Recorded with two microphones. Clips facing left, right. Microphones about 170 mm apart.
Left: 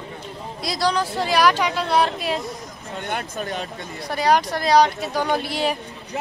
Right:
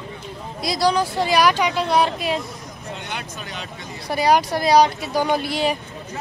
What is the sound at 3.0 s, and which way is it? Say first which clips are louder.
Speech: left 9 dB; 50° left (ahead or behind).